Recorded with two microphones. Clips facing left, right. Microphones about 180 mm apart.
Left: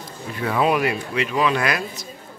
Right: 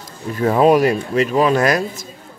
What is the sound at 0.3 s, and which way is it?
Speech, 40° right (ahead or behind).